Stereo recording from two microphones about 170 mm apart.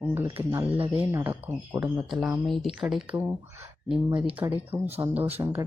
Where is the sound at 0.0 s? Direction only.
10° right (ahead or behind).